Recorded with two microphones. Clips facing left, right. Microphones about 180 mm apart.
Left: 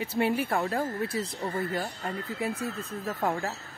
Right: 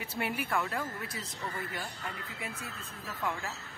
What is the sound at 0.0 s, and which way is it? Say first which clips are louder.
Speech: left 8 dB; 30° left (ahead or behind).